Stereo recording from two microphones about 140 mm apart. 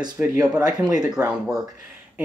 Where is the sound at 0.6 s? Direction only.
25° right (ahead or behind).